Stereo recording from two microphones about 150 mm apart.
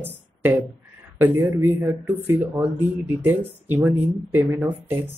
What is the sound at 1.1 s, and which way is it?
Speech, 15° right (ahead or behind).